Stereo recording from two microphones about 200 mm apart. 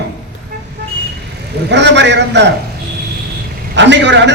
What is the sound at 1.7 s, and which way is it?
Speech, 60° right (ahead or behind).